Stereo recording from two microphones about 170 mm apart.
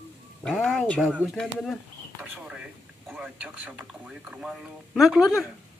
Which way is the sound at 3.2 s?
10° right (ahead or behind).